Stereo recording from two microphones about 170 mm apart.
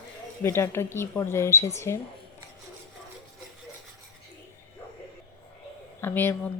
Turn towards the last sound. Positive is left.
turn(degrees=10)  # may be behind; listen again after turning